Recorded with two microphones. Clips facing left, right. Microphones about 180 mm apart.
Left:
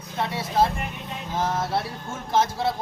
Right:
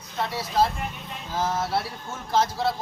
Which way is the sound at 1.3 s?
20° left (ahead or behind).